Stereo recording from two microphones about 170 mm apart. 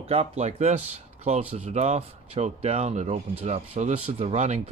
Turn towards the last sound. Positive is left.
turn(degrees=-40)  # may be behind; listen again after turning